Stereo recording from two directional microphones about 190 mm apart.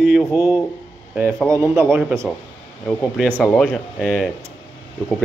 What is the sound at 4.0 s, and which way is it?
Speech, 5° right (ahead or behind).